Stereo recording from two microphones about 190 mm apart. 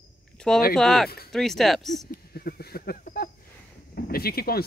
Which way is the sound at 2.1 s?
50° left (ahead or behind).